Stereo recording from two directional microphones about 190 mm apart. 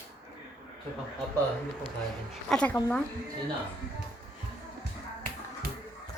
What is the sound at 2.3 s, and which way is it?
Speech, 5° left (ahead or behind).